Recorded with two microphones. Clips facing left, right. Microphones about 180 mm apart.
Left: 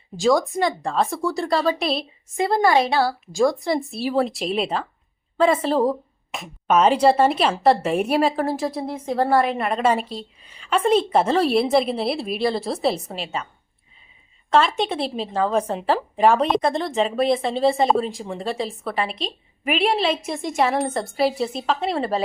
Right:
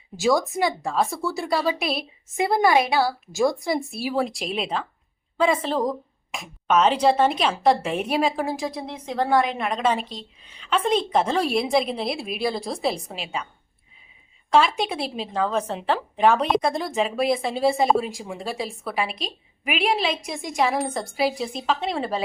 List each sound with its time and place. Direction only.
0.2 s a woman's voice: 5° right (ahead or behind)
2.4 s a woman's voice: 15° right (ahead or behind)
3.4 s a woman's voice: centre (ahead or behind)
14.5 s a woman's voice: centre (ahead or behind)